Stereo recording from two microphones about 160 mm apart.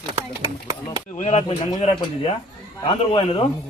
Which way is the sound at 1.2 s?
40° left (ahead or behind).